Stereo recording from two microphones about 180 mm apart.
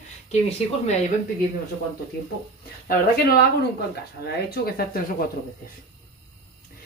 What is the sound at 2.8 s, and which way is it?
Speech, 60° left (ahead or behind).